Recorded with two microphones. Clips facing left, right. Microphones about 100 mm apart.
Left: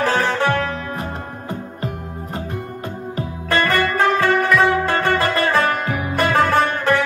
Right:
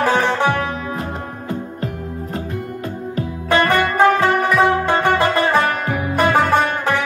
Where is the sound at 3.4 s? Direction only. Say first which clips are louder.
Right 2 dB; 15° right (ahead or behind).